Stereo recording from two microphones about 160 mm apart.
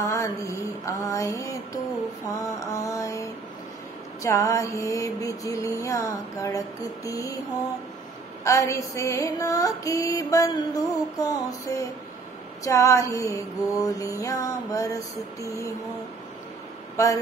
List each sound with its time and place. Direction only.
0.0 s music: 20° left (ahead or behind)
8.5 s music: 20° left (ahead or behind)
16.9 s speech: 20° left (ahead or behind)